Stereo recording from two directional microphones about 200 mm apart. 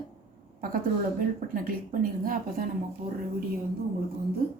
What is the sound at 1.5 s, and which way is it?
A woman's voice, 45° right (ahead or behind).